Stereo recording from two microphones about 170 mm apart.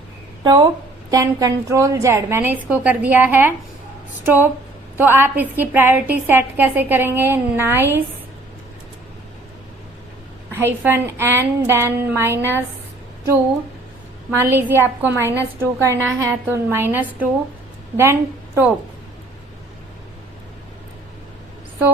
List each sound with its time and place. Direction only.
0.4 s a woman's voice: 30° right (ahead or behind); by 3.5 s 10° right (ahead or behind)
4.9 s a woman's voice: 10° right (ahead or behind)
10.5 s a woman's voice: 15° right (ahead or behind)
14.3 s a woman's voice: 15° right (ahead or behind)